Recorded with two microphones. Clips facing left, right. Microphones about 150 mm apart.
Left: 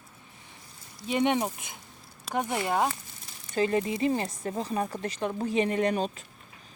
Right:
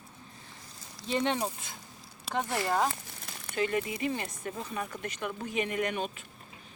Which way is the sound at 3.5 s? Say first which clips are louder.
Left 4 dB; 30° left (ahead or behind).